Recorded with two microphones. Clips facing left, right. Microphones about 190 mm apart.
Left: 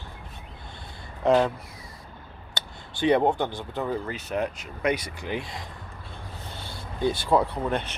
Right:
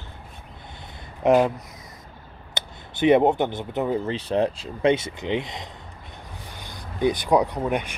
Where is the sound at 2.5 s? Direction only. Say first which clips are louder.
Right 4 dB; 20° right (ahead or behind).